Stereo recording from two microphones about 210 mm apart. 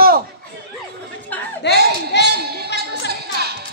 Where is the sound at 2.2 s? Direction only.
50° right (ahead or behind).